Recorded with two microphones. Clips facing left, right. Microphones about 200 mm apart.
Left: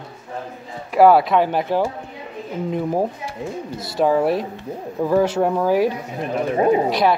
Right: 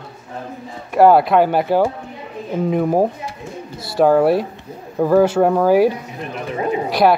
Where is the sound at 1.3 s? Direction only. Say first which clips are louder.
Right 3 dB; 60° right (ahead or behind).